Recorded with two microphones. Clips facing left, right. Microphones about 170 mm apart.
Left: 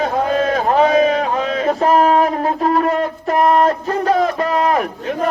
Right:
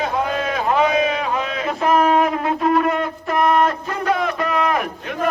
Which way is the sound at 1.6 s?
35° left (ahead or behind).